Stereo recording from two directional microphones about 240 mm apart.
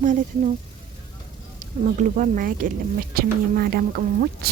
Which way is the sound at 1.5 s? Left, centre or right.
Right.